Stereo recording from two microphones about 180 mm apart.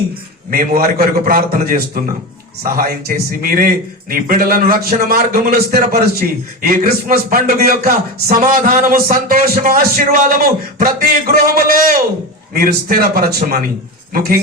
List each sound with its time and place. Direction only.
0.5 s a man's voice: 55° right (ahead or behind)